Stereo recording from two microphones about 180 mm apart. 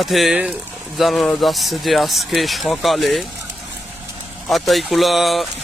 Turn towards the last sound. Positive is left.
turn(degrees=0)  # may be behind; listen again after turning